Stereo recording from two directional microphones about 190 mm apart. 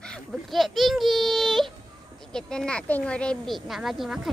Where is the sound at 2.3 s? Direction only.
5° left (ahead or behind).